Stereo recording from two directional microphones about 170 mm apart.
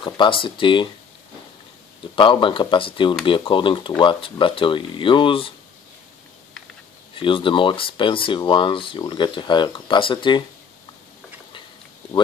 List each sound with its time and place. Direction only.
0.0 s speech: 30° left (ahead or behind)
2.1 s speech: 30° left (ahead or behind)
7.2 s speech: 30° left (ahead or behind)